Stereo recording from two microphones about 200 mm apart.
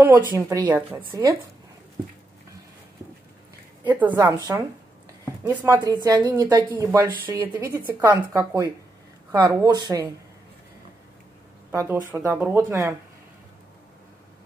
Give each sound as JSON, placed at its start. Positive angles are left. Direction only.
{"t": 0.3, "sound": "speech", "side_deg": -20}
{"t": 3.8, "sound": "a woman's voice", "side_deg": -10}
{"t": 6.0, "sound": "a woman's voice", "side_deg": -20}
{"t": 11.7, "sound": "speech", "side_deg": -15}